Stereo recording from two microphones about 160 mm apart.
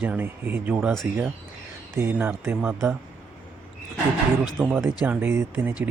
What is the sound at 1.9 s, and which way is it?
Speech, 15° right (ahead or behind).